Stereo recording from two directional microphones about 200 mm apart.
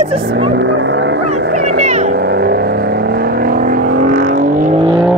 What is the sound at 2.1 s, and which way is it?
Vehicle, 50° right (ahead or behind).